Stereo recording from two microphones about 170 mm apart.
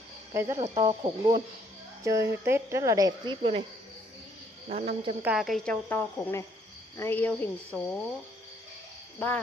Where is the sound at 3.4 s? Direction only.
35° right (ahead or behind).